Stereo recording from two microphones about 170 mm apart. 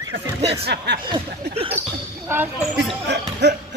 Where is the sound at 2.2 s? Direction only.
10° right (ahead or behind).